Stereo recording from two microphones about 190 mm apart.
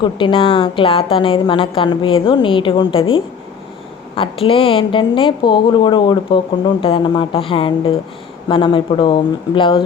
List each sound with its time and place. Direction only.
0.0 s a woman's voice: 25° left (ahead or behind)